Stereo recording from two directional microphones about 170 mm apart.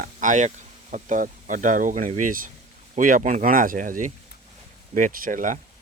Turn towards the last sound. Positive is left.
turn(degrees=-50)  # may be behind; listen again after turning